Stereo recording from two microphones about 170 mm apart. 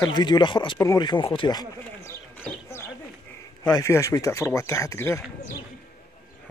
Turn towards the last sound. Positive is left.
turn(degrees=15)  # may be behind; listen again after turning